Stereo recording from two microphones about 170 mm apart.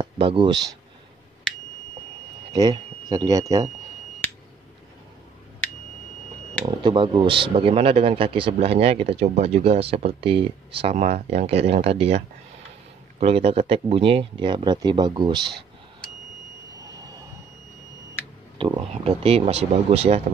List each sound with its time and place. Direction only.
0.0 s speech: 30° right (ahead or behind)
2.5 s speech: 20° right (ahead or behind)
4.2 s a sound: 10° left (ahead or behind)
6.6 s speech: 30° right (ahead or behind)
13.2 s speech: 35° right (ahead or behind)
18.7 s speech: 30° right (ahead or behind)